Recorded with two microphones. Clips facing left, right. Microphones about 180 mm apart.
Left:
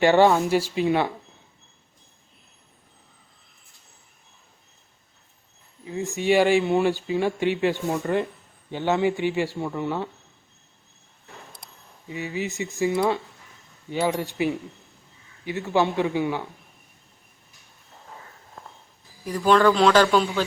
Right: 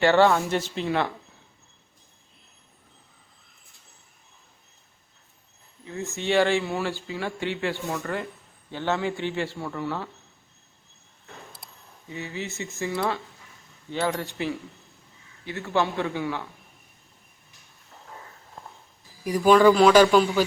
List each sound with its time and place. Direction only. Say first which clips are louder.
0.0 s speech: left 2 dB; 15° left (ahead or behind)
5.8 s speech: left 5 dB; 15° left (ahead or behind)
11.6 s a sound: even; centre (ahead or behind)
12.0 s speech: left 4 dB; 15° left (ahead or behind)
15.4 s speech: left 3 dB; 15° left (ahead or behind)
19.2 s a man's voice: right 2 dB; 15° right (ahead or behind)